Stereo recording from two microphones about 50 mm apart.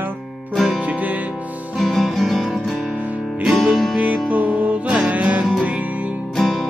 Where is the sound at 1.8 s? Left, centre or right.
Centre.